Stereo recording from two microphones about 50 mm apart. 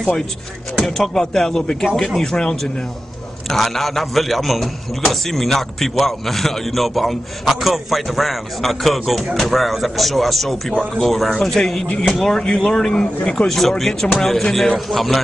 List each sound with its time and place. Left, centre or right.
0.7 s a man's voice: centre
13.6 s a man's voice: centre